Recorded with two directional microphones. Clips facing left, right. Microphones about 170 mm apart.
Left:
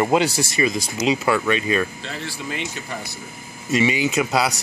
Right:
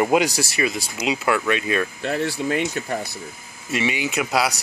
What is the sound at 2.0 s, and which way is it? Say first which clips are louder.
Speech: right 8 dB; 55° right (ahead or behind).